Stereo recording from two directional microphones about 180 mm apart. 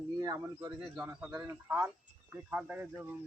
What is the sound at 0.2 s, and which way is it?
A man's voice, 20° right (ahead or behind).